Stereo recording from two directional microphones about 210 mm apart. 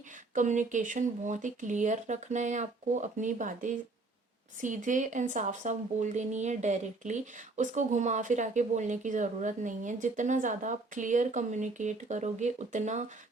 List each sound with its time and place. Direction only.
0.3 s speech: 35° right (ahead or behind)